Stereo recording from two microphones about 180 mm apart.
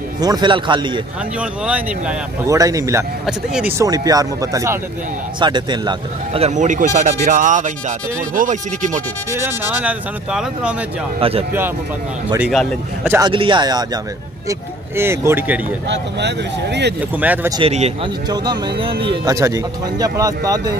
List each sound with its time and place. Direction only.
0.2 s speech: 25° right (ahead or behind)
1.4 s speech: 5° right (ahead or behind)
2.4 s speech: 20° right (ahead or behind)
3.3 s speech: 5° right (ahead or behind)
3.7 s speech: 20° right (ahead or behind); by 9.0 s 45° right (ahead or behind)
9.3 s speech: 10° right (ahead or behind)
11.1 s speech: 30° right (ahead or behind)
12.3 s speech: 5° right (ahead or behind)
13.2 s speech: 30° right (ahead or behind); by 15.6 s 10° right (ahead or behind)
15.9 s speech: 75° right (ahead or behind)
17.2 s speech: 10° right (ahead or behind)
17.5 s speech: 30° right (ahead or behind)
18.3 s speech: 25° right (ahead or behind)